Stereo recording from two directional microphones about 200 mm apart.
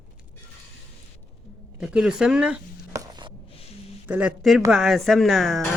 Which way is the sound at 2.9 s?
20° right (ahead or behind).